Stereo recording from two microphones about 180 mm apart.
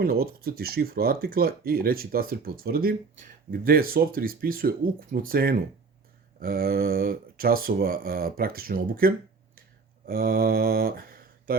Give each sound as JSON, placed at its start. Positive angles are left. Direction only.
{"t": 0.0, "sound": "speech", "side_deg": -55}